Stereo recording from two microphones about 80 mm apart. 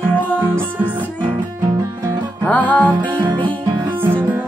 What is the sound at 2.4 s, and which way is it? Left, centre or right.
Music, centre.